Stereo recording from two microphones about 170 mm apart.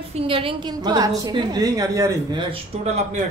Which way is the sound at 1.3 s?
25° right (ahead or behind).